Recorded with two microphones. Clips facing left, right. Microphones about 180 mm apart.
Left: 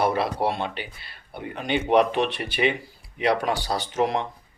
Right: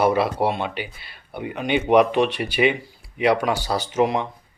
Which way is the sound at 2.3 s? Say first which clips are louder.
Right 4 dB; centre (ahead or behind).